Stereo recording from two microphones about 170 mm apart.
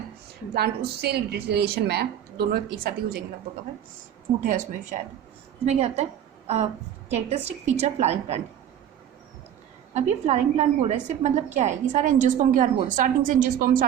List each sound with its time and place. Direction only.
0.5 s a woman's voice: 70° right (ahead or behind)
4.4 s a woman's voice: 50° right (ahead or behind)
7.1 s a woman's voice: 40° right (ahead or behind)
9.9 s a woman's voice: 40° right (ahead or behind)